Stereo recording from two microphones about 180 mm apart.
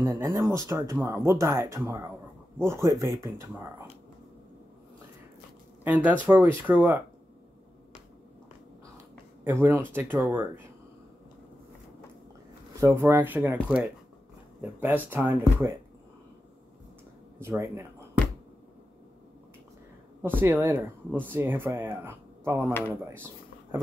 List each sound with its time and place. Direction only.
0.0 s speech: 15° right (ahead or behind)
6.2 s speech: 10° right (ahead or behind)
9.4 s speech: 10° right (ahead or behind)
12.8 s speech: 15° right (ahead or behind)
17.4 s speech: 15° right (ahead or behind)
20.2 s speech: 10° right (ahead or behind)
23.0 s a sound: 15° right (ahead or behind)